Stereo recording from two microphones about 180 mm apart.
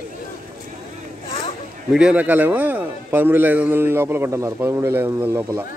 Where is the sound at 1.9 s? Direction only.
5° right (ahead or behind).